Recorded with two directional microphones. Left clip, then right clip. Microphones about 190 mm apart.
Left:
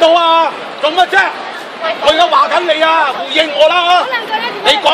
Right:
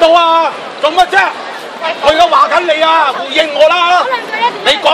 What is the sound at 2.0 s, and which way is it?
A man's voice, 5° left (ahead or behind).